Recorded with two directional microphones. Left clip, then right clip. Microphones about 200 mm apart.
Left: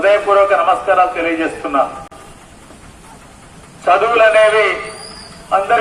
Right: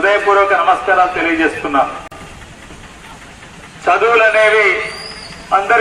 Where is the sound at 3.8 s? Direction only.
40° left (ahead or behind).